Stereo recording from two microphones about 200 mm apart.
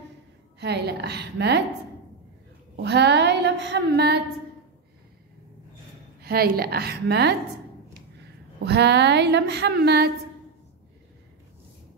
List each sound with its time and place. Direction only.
0.6 s a woman's voice: 55° right (ahead or behind)
2.7 s a woman's voice: 60° right (ahead or behind)
6.2 s a woman's voice: 50° right (ahead or behind)
8.6 s a woman's voice: 55° right (ahead or behind)